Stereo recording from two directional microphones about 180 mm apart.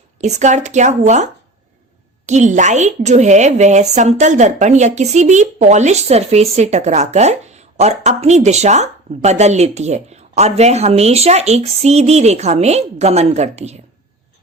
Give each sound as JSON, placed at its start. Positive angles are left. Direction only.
{"t": 0.2, "sound": "a woman's voice", "side_deg": -40}